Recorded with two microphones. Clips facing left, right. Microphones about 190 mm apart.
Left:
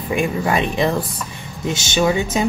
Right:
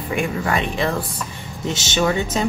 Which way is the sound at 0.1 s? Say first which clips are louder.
Left 3 dB; 20° left (ahead or behind).